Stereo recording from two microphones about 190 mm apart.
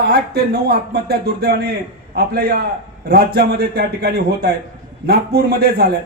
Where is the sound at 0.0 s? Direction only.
55° right (ahead or behind).